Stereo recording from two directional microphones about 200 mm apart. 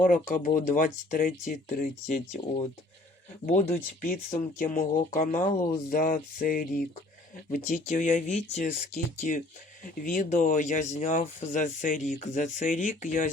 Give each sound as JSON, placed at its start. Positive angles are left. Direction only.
{"t": 0.0, "sound": "speech", "side_deg": 40}
{"t": 3.4, "sound": "speech", "side_deg": 40}
{"t": 10.0, "sound": "speech", "side_deg": 40}